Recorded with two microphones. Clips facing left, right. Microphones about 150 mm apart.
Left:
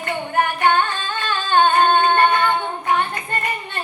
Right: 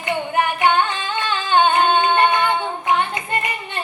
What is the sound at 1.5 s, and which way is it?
Singing, 15° right (ahead or behind).